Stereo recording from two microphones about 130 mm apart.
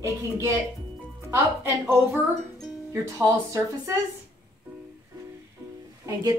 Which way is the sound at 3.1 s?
25° right (ahead or behind).